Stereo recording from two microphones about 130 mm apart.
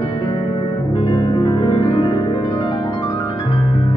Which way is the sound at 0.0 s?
35° left (ahead or behind).